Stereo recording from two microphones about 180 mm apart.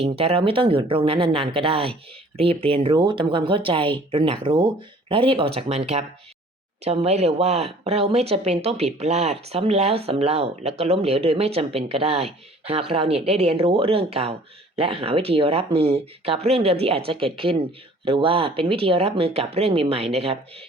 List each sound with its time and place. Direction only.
0.0 s speech: 30° right (ahead or behind)